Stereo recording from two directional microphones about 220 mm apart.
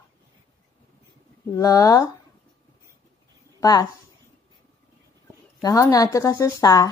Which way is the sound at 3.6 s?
20° left (ahead or behind).